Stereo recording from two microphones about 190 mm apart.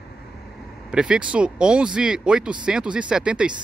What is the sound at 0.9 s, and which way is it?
Speech, 5° right (ahead or behind).